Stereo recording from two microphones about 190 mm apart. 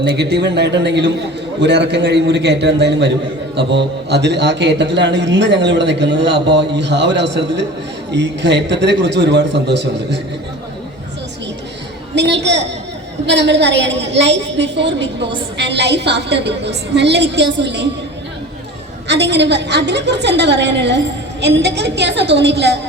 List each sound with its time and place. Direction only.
0.0 s a man's voice: 60° right (ahead or behind)
12.1 s a man's voice: 65° right (ahead or behind)
19.0 s a man's voice: 65° right (ahead or behind)